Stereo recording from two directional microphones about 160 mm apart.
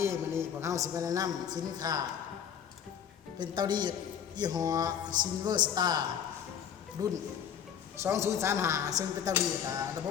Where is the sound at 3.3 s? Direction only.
30° right (ahead or behind).